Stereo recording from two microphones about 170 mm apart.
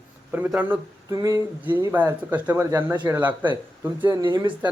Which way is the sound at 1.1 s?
20° right (ahead or behind).